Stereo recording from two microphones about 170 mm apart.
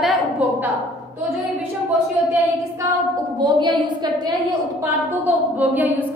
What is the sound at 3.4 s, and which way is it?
Speech, 25° right (ahead or behind).